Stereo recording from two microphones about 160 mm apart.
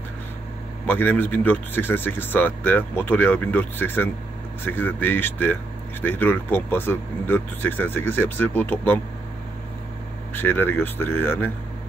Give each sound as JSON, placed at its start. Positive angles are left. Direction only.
{"t": 0.8, "sound": "speech", "side_deg": 10}
{"t": 10.3, "sound": "speech", "side_deg": 10}